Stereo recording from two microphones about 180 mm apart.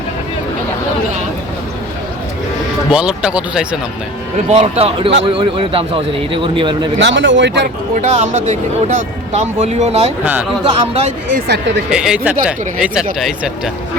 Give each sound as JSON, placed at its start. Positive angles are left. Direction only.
{"t": 2.9, "sound": "speech", "side_deg": -5}
{"t": 4.4, "sound": "a man's voice", "side_deg": -35}
{"t": 7.0, "sound": "speech", "side_deg": -90}
{"t": 7.9, "sound": "speech", "side_deg": -40}
{"t": 11.3, "sound": "speech", "side_deg": -75}
{"t": 11.9, "sound": "speech", "side_deg": -5}